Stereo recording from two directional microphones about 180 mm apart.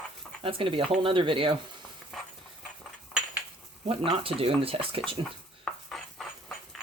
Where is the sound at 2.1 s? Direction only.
Centre (ahead or behind).